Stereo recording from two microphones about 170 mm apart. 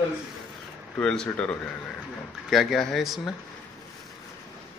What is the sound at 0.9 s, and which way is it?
A man's voice, 5° left (ahead or behind).